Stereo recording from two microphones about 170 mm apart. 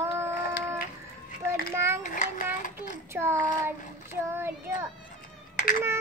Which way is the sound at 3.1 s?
15° right (ahead or behind).